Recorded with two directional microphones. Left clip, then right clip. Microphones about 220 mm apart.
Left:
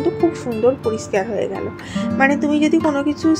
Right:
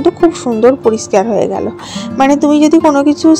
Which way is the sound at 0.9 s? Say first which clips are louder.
Right 9 dB; 30° right (ahead or behind).